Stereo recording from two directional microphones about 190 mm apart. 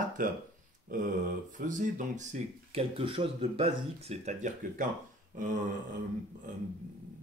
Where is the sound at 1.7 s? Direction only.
40° right (ahead or behind).